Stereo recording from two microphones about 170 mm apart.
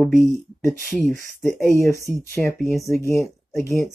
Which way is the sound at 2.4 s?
5° left (ahead or behind).